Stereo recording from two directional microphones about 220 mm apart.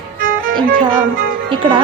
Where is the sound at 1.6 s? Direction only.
20° right (ahead or behind).